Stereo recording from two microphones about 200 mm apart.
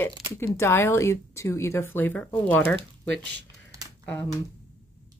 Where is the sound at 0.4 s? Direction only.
10° left (ahead or behind).